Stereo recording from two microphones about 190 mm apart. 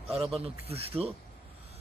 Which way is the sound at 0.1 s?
Centre (ahead or behind).